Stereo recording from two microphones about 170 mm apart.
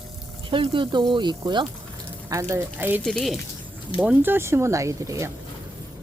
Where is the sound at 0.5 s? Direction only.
30° right (ahead or behind); by 3.0 s 10° right (ahead or behind).